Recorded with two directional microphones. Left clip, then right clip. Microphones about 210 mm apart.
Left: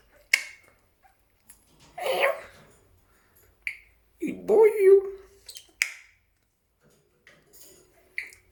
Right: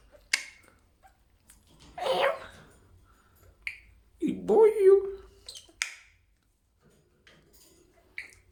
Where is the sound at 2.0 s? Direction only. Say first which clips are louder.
Left 2 dB; 5° right (ahead or behind).